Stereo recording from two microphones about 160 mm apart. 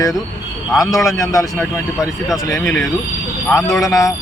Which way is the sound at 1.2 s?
20° left (ahead or behind).